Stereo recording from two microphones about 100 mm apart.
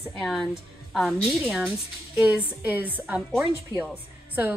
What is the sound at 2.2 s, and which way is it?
A woman's voice, 10° right (ahead or behind).